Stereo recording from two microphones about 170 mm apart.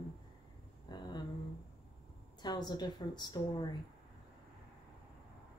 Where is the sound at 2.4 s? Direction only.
25° left (ahead or behind).